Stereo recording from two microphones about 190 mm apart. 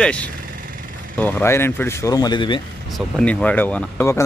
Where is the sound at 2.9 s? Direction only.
5° left (ahead or behind).